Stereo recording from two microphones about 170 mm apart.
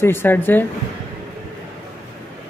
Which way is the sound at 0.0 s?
15° left (ahead or behind).